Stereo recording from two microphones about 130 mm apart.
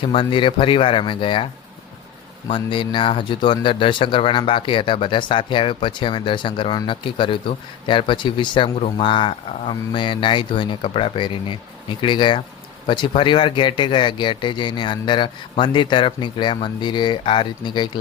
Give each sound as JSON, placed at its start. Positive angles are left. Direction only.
{"t": 0.0, "sound": "speech", "side_deg": 40}
{"t": 2.5, "sound": "speech", "side_deg": 40}